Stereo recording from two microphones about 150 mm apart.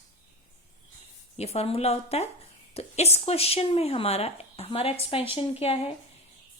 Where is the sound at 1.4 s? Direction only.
45° left (ahead or behind).